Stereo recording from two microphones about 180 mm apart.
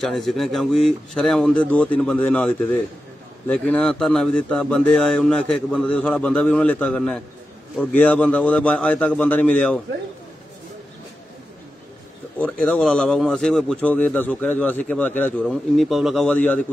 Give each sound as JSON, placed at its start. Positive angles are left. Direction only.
{"t": 0.0, "sound": "a man's voice", "side_deg": 0}
{"t": 12.4, "sound": "a man's voice", "side_deg": 10}